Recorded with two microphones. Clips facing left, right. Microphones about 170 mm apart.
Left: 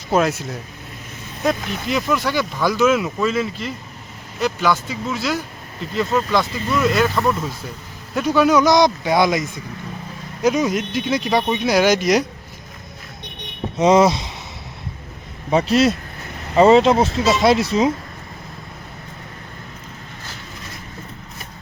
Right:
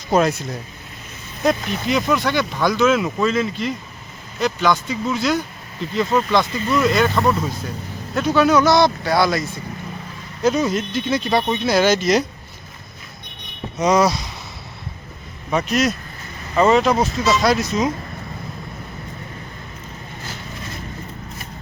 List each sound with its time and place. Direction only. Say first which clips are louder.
0.1 s speech: right 1 dB; 5° left (ahead or behind)
1.5 s speech: right 2 dB; centre (ahead or behind)
13.7 s speech: left 3 dB; 25° left (ahead or behind)
15.4 s speech: left 4 dB; 30° left (ahead or behind)